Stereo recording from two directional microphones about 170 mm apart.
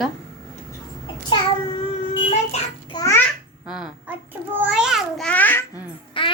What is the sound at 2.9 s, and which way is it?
Babbling, 20° left (ahead or behind).